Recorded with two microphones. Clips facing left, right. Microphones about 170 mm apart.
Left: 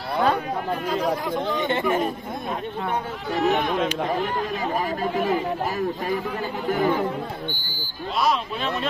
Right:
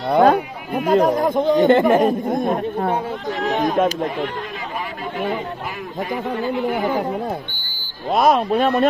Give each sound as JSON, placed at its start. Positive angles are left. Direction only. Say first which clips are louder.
{"t": 0.1, "sound": "a sound", "louder": "right 8 dB", "side_deg": -50}
{"t": 0.8, "sound": "speech", "louder": "right 11 dB", "side_deg": -50}
{"t": 8.1, "sound": "speech", "louder": "right 8 dB", "side_deg": -50}